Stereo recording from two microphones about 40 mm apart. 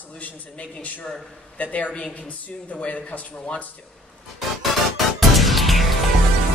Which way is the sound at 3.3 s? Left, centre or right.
Left.